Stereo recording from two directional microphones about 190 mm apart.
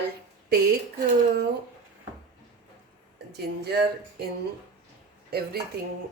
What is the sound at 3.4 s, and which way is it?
Speech, 60° right (ahead or behind).